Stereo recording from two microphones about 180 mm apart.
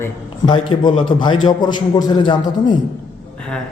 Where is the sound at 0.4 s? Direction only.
25° left (ahead or behind).